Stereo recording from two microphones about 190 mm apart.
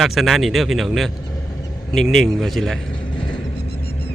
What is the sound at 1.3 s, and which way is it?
Vehicle, 15° left (ahead or behind).